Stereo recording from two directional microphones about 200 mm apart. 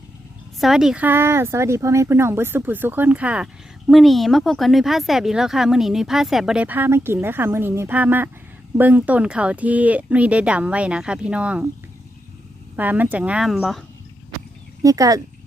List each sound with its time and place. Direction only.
0.6 s speech: centre (ahead or behind)
12.7 s speech: 10° right (ahead or behind)
14.8 s speech: 15° right (ahead or behind)